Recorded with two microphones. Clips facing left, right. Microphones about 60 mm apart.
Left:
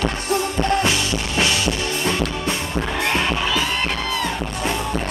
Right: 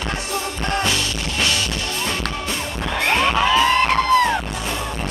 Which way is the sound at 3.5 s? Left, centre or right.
Right.